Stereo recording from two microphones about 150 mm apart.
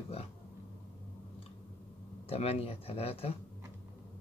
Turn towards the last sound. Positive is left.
turn(degrees=40)  # may be behind; listen again after turning